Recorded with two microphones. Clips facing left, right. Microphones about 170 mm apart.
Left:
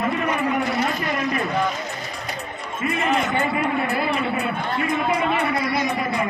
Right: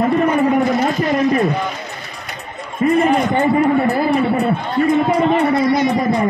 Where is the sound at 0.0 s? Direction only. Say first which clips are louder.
Right 8 dB; 45° right (ahead or behind).